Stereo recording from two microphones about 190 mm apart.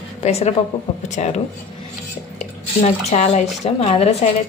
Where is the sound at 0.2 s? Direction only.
35° left (ahead or behind).